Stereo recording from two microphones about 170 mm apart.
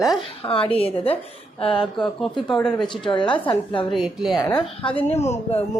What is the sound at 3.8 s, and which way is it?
Speech, centre (ahead or behind).